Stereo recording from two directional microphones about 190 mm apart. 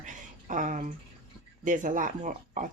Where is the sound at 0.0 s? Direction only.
40° right (ahead or behind).